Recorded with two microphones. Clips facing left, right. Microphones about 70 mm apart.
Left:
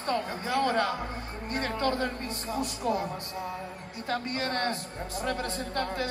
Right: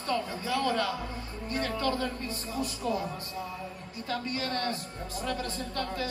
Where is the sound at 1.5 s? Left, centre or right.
Left.